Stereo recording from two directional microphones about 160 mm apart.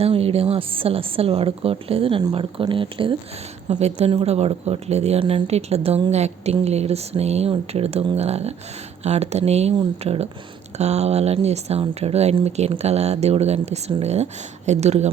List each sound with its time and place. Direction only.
0.0 s speech: 40° right (ahead or behind)
3.7 s speech: 45° right (ahead or behind)